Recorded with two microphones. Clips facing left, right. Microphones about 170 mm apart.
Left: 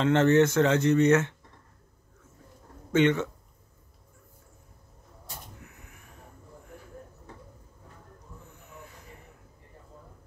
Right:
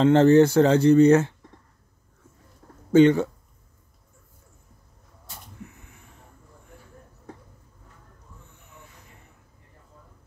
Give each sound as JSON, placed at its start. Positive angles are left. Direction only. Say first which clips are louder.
{"t": 0.0, "sound": "speech", "louder": "right 6 dB", "side_deg": -35}
{"t": 2.9, "sound": "speech", "louder": "right 7 dB", "side_deg": -35}
{"t": 5.6, "sound": "a sound", "louder": "right 8 dB", "side_deg": -25}